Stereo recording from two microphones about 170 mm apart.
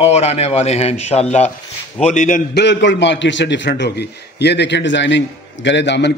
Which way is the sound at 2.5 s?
90° left.